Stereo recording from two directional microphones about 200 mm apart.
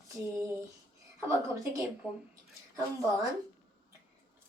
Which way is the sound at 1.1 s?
15° right (ahead or behind).